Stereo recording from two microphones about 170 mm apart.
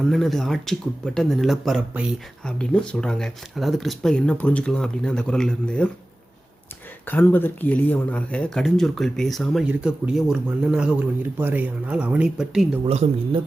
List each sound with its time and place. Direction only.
0.0 s speech: centre (ahead or behind)
7.0 s speech: 10° left (ahead or behind); by 12.8 s 5° right (ahead or behind)
12.8 s speech: 35° right (ahead or behind)